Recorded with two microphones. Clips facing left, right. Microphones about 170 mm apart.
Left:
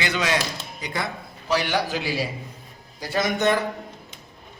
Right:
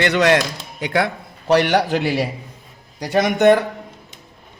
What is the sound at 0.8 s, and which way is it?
A man's voice, 80° right.